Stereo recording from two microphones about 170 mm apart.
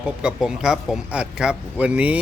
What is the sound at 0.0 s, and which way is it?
Speech, 5° right (ahead or behind).